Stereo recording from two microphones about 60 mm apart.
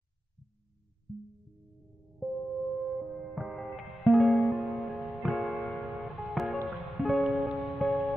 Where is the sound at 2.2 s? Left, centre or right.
Centre.